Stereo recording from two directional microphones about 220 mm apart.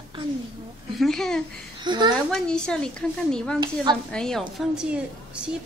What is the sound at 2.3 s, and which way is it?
Speech, 5° left (ahead or behind).